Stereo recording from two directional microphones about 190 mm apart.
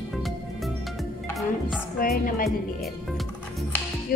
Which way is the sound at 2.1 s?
50° left (ahead or behind).